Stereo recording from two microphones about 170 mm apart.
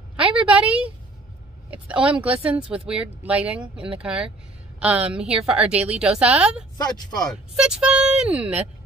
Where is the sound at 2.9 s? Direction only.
5° right (ahead or behind).